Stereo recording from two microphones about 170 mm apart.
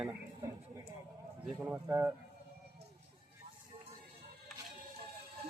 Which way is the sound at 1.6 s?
10° right (ahead or behind).